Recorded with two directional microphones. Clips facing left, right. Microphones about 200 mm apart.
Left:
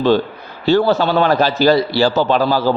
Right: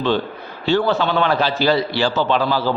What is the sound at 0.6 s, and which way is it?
A man's voice, 40° left (ahead or behind).